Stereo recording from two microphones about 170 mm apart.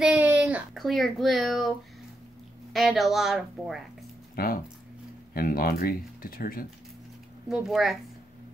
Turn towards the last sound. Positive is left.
turn(degrees=0)  # may be behind; listen again after turning